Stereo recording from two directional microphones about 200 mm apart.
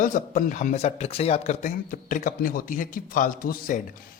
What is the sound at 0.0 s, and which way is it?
Speech, 40° left (ahead or behind).